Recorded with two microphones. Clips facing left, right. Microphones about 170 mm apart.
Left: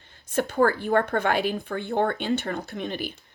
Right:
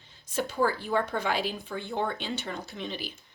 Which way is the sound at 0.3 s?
55° left (ahead or behind).